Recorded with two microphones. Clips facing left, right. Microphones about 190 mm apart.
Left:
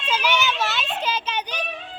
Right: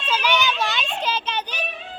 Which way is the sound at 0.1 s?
10° left (ahead or behind).